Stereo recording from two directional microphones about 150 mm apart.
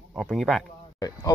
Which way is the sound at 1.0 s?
25° left (ahead or behind).